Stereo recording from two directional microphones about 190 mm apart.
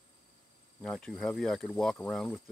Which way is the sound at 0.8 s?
5° left (ahead or behind).